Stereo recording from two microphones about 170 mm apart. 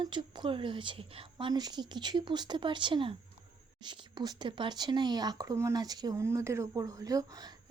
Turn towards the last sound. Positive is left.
turn(degrees=-20)  # may be behind; listen again after turning